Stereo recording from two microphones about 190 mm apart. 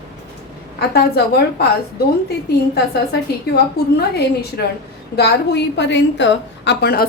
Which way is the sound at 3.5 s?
60° left (ahead or behind).